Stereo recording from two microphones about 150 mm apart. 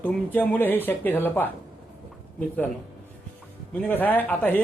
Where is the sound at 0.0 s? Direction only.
10° left (ahead or behind).